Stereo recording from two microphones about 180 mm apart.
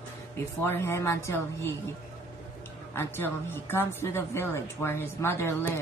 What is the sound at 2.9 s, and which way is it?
A woman's voice, 10° left (ahead or behind).